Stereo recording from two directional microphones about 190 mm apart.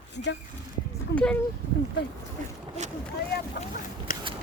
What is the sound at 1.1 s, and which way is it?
Speech, 65° left (ahead or behind).